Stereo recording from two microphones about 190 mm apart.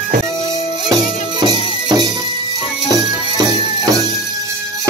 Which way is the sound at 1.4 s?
20° right (ahead or behind).